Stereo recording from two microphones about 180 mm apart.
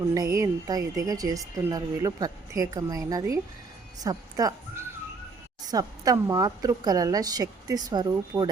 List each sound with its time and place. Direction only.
0.3 s speech: 20° right (ahead or behind)
5.6 s speech: 20° right (ahead or behind)